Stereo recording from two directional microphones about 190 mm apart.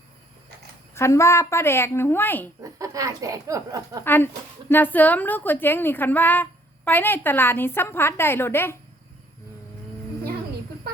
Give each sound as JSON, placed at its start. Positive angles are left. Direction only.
{"t": 0.9, "sound": "a woman's voice", "side_deg": 15}
{"t": 2.6, "sound": "speech", "side_deg": -15}
{"t": 4.0, "sound": "a woman's voice", "side_deg": 10}